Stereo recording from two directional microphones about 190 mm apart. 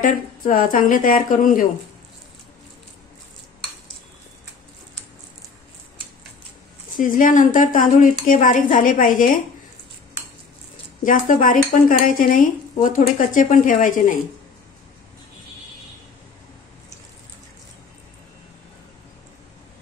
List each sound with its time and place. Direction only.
0.0 s dishes: 45° left (ahead or behind)
7.0 s dishes: 45° left (ahead or behind)
11.1 s dishes: 45° left (ahead or behind)